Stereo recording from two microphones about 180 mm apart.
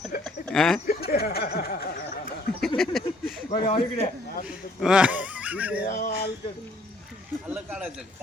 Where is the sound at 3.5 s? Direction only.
35° left (ahead or behind).